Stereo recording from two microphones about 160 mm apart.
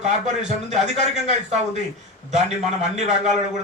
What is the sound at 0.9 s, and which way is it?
Speech, 45° right (ahead or behind).